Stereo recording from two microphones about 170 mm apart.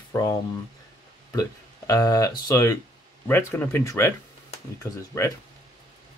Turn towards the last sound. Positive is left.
turn(degrees=20)  # may be behind; listen again after turning